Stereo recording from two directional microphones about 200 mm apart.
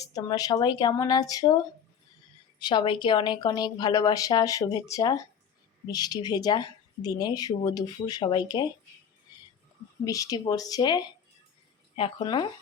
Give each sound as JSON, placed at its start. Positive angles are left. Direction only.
{"t": 0.0, "sound": "speech", "side_deg": 20}
{"t": 2.6, "sound": "speech", "side_deg": 25}
{"t": 10.0, "sound": "speech", "side_deg": 20}